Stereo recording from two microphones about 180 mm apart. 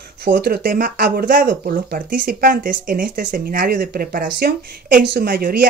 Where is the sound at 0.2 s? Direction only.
65° right (ahead or behind).